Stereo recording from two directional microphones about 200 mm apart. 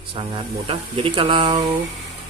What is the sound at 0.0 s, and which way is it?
Speech, 25° right (ahead or behind).